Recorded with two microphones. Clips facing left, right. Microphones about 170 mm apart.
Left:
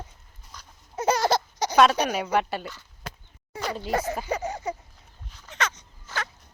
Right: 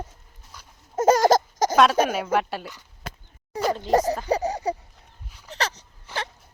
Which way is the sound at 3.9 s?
35° right (ahead or behind).